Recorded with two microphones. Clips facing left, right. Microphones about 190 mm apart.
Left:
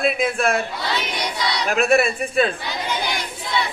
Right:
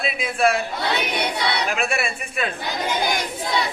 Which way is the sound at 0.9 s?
60° right (ahead or behind).